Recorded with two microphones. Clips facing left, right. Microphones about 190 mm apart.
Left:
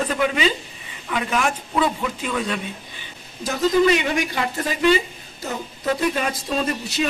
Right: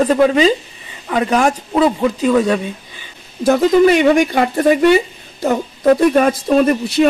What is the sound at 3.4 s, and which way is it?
A woman's voice, 60° right (ahead or behind).